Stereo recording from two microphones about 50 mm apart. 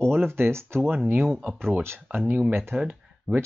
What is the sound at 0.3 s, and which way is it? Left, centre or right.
Speech, right.